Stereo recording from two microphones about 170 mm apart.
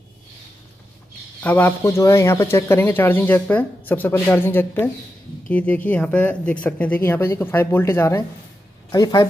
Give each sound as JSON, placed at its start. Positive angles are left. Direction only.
{"t": 1.4, "sound": "speech", "side_deg": 10}